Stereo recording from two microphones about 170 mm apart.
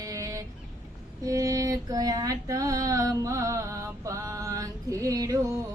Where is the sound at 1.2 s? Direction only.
20° right (ahead or behind).